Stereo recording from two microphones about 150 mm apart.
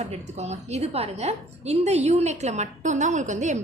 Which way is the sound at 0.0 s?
50° right (ahead or behind).